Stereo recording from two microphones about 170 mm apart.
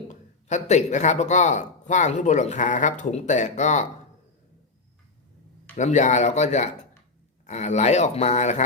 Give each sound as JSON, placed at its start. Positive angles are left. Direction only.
{"t": 0.1, "sound": "speech", "side_deg": 45}
{"t": 5.7, "sound": "speech", "side_deg": 45}